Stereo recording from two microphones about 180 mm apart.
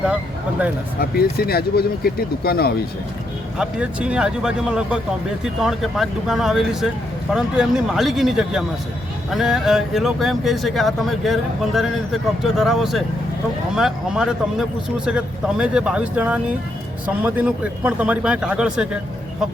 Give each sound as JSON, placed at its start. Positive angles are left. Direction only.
{"t": 0.9, "sound": "speech", "side_deg": 60}
{"t": 3.6, "sound": "speech", "side_deg": -5}